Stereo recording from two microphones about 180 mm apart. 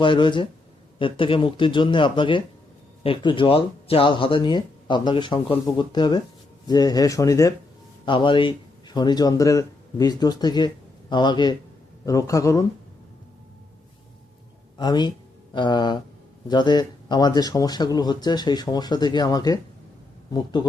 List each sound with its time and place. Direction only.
0.0 s speech: 25° left (ahead or behind)
14.8 s speech: 25° left (ahead or behind)